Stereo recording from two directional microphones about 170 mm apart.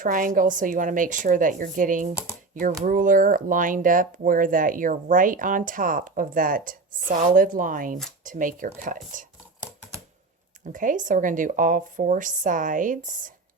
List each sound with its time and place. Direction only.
0.0 s speech: 55° right (ahead or behind)
10.7 s speech: 50° right (ahead or behind)